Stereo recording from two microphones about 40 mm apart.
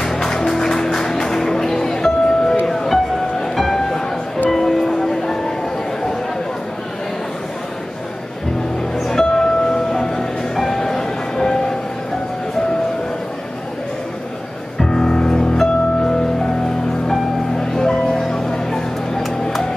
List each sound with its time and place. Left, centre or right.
0.0 s music: centre
8.9 s music: centre
9.3 s train: centre
14.8 s music: centre